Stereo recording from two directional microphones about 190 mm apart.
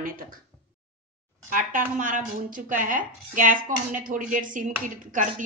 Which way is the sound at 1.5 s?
45° right (ahead or behind).